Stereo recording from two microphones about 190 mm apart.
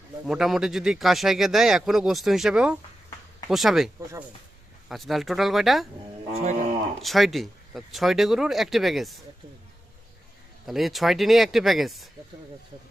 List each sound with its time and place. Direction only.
0.3 s a man's voice: centre (ahead or behind)
6.3 s speech: 40° right (ahead or behind)
7.0 s a man's voice: centre (ahead or behind)
10.7 s a man's voice: centre (ahead or behind)